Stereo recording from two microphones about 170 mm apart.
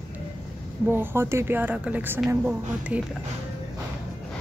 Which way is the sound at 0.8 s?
15° right (ahead or behind).